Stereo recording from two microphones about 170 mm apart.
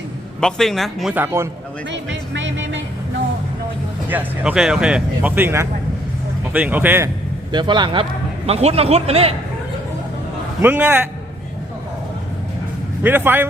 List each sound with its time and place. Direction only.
0.3 s speech: 5° left (ahead or behind)
1.1 s speech: 15° right (ahead or behind)
1.9 s music: 90° right
4.1 s speech: 10° right (ahead or behind)
7.5 s a man's voice: 25° right (ahead or behind)
10.6 s speech: 10° right (ahead or behind)
13.0 s speech: 10° right (ahead or behind)